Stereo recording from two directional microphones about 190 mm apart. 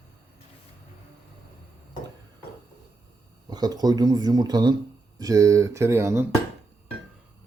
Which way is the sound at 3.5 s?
20° right (ahead or behind).